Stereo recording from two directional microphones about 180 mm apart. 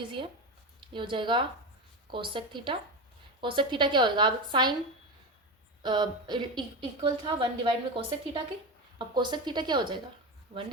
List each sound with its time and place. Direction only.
0.8 s a woman's voice: 25° right (ahead or behind)
5.8 s a woman's voice: 25° right (ahead or behind)